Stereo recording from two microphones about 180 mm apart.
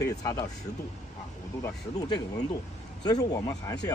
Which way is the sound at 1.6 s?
20° left (ahead or behind).